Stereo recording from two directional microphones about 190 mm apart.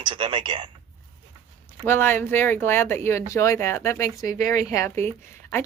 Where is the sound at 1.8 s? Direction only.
10° left (ahead or behind).